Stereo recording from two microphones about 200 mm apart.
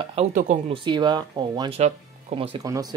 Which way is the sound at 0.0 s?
30° right (ahead or behind).